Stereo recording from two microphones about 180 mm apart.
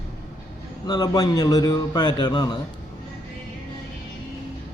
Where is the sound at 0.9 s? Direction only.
20° left (ahead or behind).